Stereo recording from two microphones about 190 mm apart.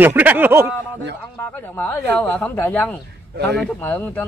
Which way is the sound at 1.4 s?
10° left (ahead or behind).